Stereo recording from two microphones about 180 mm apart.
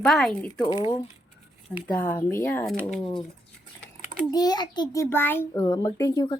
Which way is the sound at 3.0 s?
30° left (ahead or behind).